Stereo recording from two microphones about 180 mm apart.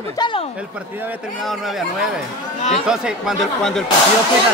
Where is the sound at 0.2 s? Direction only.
30° left (ahead or behind).